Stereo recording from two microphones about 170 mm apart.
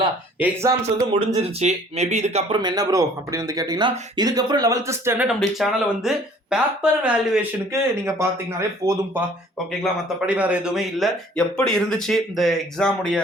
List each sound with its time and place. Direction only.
0.4 s speech: 15° right (ahead or behind)
1.5 s speech: 40° right (ahead or behind)
2.6 s speech: 25° right (ahead or behind)
5.4 s speech: centre (ahead or behind)
7.7 s speech: 15° right (ahead or behind)
9.8 s speech: 5° right (ahead or behind)